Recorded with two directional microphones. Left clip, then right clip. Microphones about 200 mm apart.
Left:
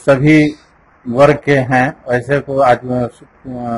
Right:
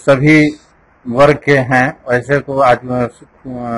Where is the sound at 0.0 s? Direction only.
Centre (ahead or behind).